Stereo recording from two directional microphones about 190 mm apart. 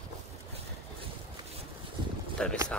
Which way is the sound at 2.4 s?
5° left (ahead or behind).